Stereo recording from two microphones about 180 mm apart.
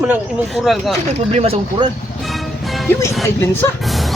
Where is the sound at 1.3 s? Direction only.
35° right (ahead or behind).